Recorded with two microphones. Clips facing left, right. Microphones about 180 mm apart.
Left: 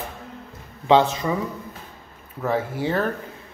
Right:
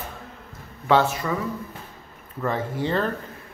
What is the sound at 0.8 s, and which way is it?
Speech, 20° left (ahead or behind).